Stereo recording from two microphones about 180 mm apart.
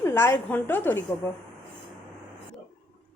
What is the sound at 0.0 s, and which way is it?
A woman's voice, 15° left (ahead or behind).